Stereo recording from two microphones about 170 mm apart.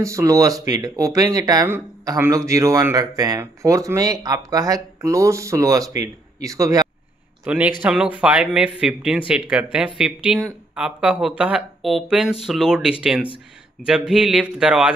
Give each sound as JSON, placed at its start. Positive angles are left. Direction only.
{"t": 0.0, "sound": "speech", "side_deg": -20}
{"t": 7.4, "sound": "a man's voice", "side_deg": -10}